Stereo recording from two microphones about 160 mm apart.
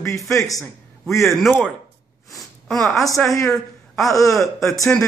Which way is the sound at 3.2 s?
20° left (ahead or behind).